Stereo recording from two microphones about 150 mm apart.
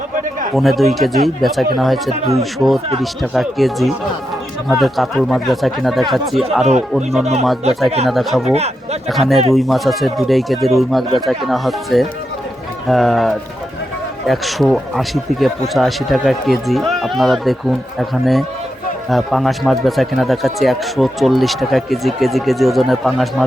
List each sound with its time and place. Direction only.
0.5 s speech: centre (ahead or behind)
8.5 s speech: 45° right (ahead or behind)
9.0 s speech: centre (ahead or behind)